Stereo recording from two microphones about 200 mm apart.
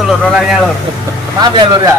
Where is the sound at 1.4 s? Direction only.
20° right (ahead or behind).